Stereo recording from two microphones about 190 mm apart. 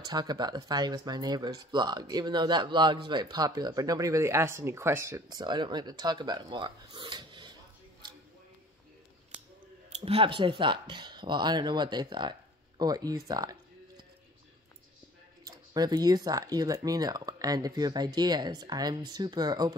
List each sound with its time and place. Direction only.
0.0 s speech: 20° right (ahead or behind)
9.9 s speech: 30° right (ahead or behind)
15.4 s speech: 20° right (ahead or behind)